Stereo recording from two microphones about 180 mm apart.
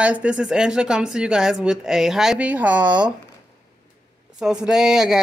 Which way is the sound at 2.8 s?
25° right (ahead or behind).